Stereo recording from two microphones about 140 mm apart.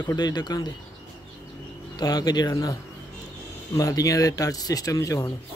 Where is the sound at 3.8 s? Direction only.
25° left (ahead or behind).